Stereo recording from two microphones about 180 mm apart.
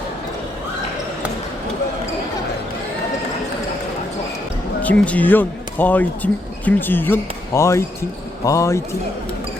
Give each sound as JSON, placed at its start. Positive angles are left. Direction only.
{"t": 4.8, "sound": "speech", "side_deg": 10}